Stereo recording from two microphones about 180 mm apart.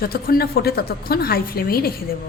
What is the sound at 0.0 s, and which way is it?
A woman's voice, 55° left (ahead or behind).